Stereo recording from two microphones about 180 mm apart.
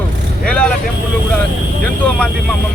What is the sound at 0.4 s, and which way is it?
Vehicle, 5° left (ahead or behind).